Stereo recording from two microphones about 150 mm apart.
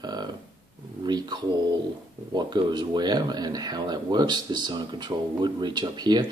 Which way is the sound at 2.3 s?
30° right (ahead or behind).